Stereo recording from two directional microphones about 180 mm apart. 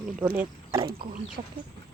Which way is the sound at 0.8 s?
55° right (ahead or behind).